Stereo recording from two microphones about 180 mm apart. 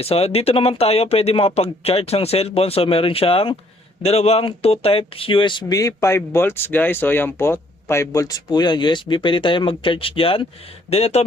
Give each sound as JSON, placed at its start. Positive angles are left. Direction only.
{"t": 0.0, "sound": "speech", "side_deg": 35}